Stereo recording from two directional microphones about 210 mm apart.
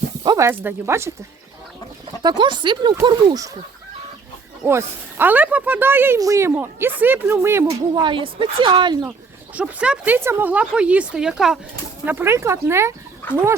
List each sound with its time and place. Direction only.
0.3 s speech: 15° right (ahead or behind)
2.2 s speech: 20° right (ahead or behind)
4.6 s speech: 10° right (ahead or behind)
9.6 s speech: 5° right (ahead or behind)
13.2 s speech: 10° left (ahead or behind)